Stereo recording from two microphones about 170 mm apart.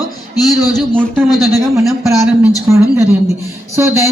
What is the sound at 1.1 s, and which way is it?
Speech, centre (ahead or behind).